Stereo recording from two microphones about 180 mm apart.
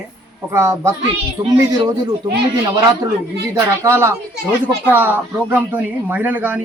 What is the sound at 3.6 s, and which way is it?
A man's voice, 15° right (ahead or behind).